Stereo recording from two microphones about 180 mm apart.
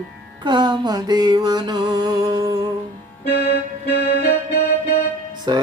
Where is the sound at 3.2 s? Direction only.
65° left (ahead or behind).